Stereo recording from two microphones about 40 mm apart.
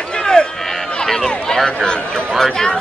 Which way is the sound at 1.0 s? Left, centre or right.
Centre.